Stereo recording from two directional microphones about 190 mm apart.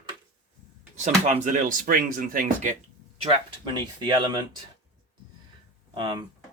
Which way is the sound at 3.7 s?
20° right (ahead or behind).